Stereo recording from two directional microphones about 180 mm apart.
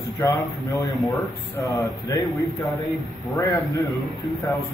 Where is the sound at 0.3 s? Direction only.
15° left (ahead or behind).